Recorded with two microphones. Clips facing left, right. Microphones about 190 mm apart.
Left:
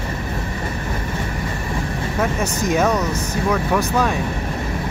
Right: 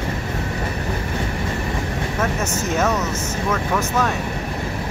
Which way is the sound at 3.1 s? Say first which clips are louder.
Left 1 dB; 35° left (ahead or behind).